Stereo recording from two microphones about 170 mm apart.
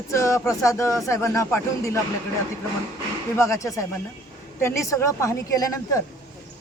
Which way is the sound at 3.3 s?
15° left (ahead or behind).